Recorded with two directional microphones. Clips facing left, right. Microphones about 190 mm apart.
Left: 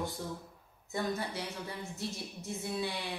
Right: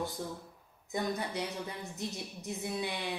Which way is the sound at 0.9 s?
20° right (ahead or behind).